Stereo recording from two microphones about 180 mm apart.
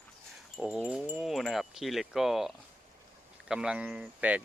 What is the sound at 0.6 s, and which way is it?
Speech, 5° right (ahead or behind).